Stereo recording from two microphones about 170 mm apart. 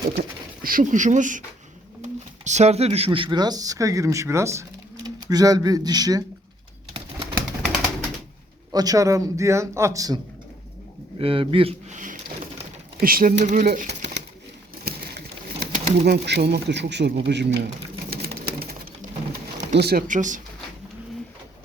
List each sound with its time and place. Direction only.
0.2 s speech: 55° right (ahead or behind); by 6.2 s 20° right (ahead or behind)
8.7 s speech: 20° right (ahead or behind)
11.2 s a man's voice: 30° right (ahead or behind)
11.9 s a sound: 50° right (ahead or behind)
13.7 s speech: 70° right (ahead or behind)
14.9 s pigeon: 65° right (ahead or behind)
15.6 s speech: 75° right (ahead or behind)
17.2 s pigeon: 85° right; by 18.8 s 65° right (ahead or behind)
19.5 s speech: 80° right; by 20.4 s 50° right (ahead or behind)